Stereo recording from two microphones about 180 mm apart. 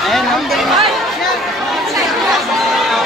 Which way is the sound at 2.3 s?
Centre (ahead or behind).